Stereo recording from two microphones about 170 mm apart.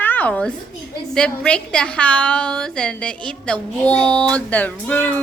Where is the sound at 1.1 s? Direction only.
5° left (ahead or behind).